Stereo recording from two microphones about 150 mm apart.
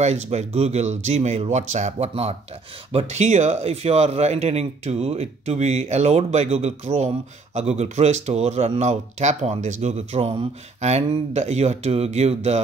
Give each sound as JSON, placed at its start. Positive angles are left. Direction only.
{"t": 0.0, "sound": "speech", "side_deg": -45}